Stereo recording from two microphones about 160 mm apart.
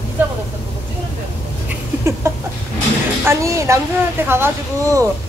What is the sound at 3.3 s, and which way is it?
A woman's voice, 20° right (ahead or behind).